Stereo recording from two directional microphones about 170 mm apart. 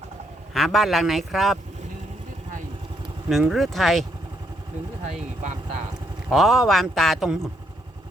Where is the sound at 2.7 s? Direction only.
30° right (ahead or behind).